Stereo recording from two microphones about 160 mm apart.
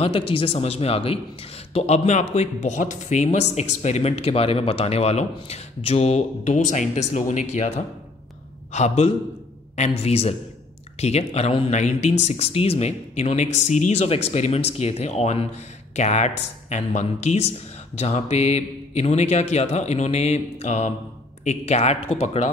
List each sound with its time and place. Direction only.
0.3 s a man's voice: 35° left (ahead or behind)